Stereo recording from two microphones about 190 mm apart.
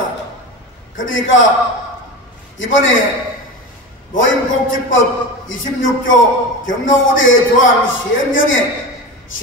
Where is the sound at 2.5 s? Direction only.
90° left.